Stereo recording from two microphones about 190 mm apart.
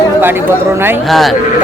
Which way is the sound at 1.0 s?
Centre (ahead or behind).